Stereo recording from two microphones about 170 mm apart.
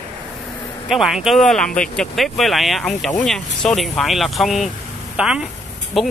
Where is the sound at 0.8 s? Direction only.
Centre (ahead or behind).